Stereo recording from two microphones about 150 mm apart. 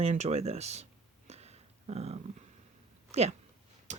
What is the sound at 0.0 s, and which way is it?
Speech, 45° right (ahead or behind).